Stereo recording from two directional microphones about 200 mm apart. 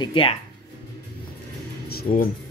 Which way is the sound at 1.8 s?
50° left (ahead or behind).